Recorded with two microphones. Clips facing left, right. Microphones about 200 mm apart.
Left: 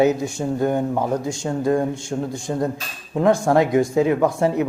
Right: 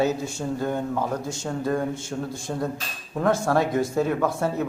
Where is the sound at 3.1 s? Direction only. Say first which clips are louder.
Left 5 dB; 15° left (ahead or behind).